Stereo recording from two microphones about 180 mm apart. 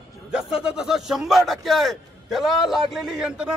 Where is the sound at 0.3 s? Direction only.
5° right (ahead or behind).